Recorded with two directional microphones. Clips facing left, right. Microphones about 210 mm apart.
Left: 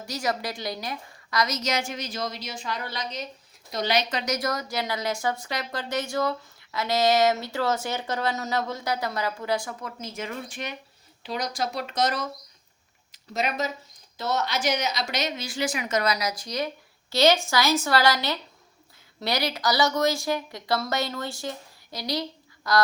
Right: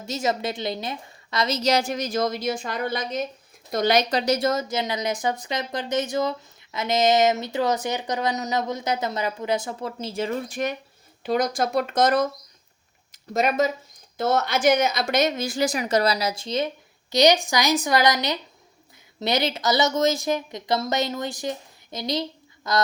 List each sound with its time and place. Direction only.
0.0 s a woman's voice: 25° right (ahead or behind); by 12.3 s 50° right (ahead or behind)
13.1 s a sound: 50° right (ahead or behind)
14.2 s a woman's voice: 50° right (ahead or behind); by 22.8 s 20° right (ahead or behind)